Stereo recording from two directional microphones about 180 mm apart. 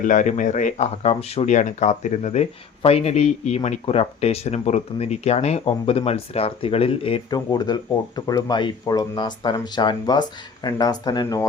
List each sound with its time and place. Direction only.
0.0 s speech: 45° left (ahead or behind); by 11.4 s 20° left (ahead or behind)